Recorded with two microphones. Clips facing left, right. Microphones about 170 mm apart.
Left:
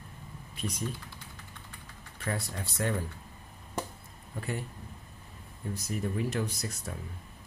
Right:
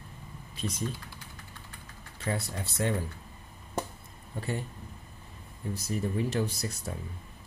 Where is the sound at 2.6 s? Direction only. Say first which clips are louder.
Right 1 dB; 25° right (ahead or behind).